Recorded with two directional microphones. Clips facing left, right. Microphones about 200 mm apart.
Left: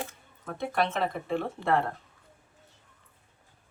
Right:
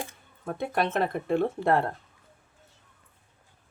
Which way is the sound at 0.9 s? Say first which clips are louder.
Right 3 dB; 55° right (ahead or behind).